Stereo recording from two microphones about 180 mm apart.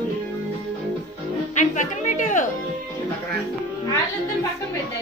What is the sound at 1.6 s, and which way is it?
Music, 45° left (ahead or behind).